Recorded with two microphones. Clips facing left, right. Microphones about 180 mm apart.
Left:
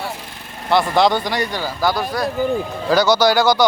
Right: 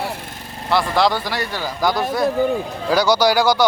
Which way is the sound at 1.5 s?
5° left (ahead or behind).